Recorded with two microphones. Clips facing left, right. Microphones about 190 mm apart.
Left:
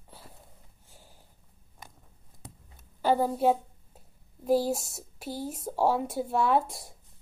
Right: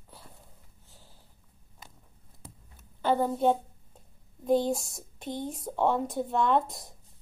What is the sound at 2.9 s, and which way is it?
A woman's voice, 5° left (ahead or behind).